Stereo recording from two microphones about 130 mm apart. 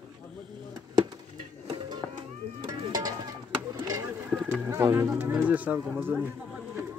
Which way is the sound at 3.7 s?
25° right (ahead or behind).